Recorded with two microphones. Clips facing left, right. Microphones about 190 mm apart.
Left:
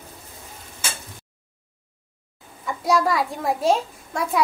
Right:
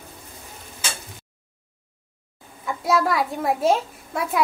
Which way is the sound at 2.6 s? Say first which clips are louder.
Left 1 dB; centre (ahead or behind).